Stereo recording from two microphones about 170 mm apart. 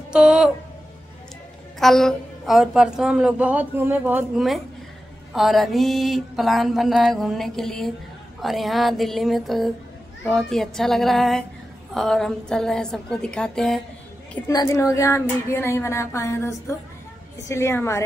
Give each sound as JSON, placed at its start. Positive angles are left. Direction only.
{"t": 0.1, "sound": "speech", "side_deg": -5}
{"t": 1.8, "sound": "a woman's voice", "side_deg": 0}
{"t": 14.5, "sound": "speech", "side_deg": 20}